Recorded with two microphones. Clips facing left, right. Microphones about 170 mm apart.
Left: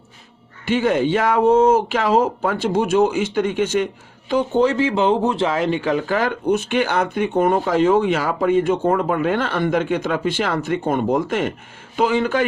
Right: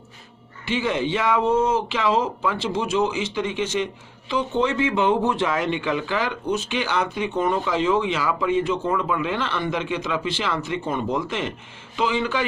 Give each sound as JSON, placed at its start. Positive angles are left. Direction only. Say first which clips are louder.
{"t": 0.6, "sound": "speech", "louder": "left 6 dB", "side_deg": 50}